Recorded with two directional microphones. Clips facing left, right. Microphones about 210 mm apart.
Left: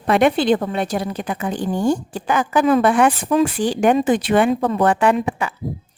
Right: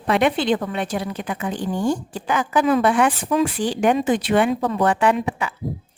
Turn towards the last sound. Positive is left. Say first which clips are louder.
# left 2 dB
turn(degrees=50)  # may be behind; listen again after turning